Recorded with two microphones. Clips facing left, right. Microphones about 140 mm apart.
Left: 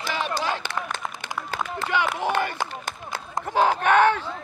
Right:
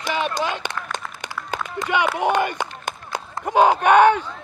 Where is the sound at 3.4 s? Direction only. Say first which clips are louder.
Right 5 dB; 15° right (ahead or behind).